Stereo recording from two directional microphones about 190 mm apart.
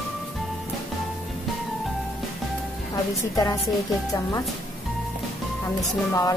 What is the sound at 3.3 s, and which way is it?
Speech, 15° left (ahead or behind).